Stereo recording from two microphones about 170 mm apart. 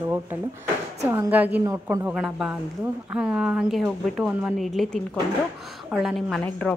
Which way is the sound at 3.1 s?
5° right (ahead or behind).